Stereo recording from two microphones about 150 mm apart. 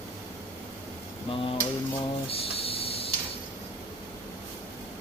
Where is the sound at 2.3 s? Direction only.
40° left (ahead or behind).